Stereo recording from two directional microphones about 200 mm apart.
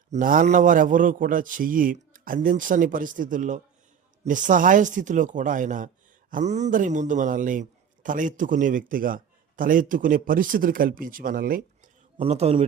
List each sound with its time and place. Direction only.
0.1 s a man's voice: 40° right (ahead or behind)
12.1 s a man's voice: 30° right (ahead or behind)